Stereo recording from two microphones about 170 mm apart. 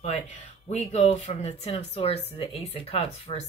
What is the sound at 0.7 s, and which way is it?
Speech, 40° left (ahead or behind).